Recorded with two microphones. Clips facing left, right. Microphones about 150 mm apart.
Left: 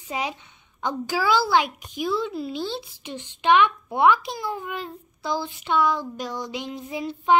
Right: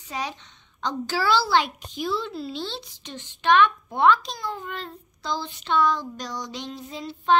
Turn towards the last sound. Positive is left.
turn(degrees=20)  # may be behind; listen again after turning